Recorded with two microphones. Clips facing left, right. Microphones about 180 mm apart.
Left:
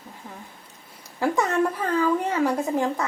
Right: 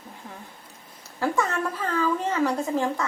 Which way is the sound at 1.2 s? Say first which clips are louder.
Left 3 dB; 15° left (ahead or behind).